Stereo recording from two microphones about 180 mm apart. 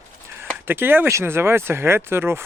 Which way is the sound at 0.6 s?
10° right (ahead or behind).